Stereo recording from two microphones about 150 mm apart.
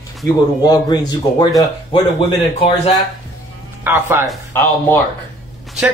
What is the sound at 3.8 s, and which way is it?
Speech, 15° right (ahead or behind).